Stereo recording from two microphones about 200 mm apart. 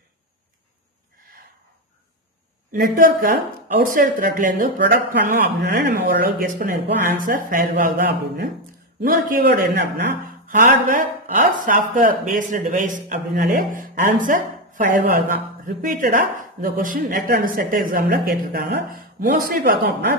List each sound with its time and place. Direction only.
2.7 s speech: 45° right (ahead or behind)